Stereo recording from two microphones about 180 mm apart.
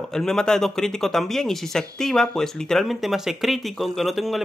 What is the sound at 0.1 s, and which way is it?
Speech, 5° left (ahead or behind).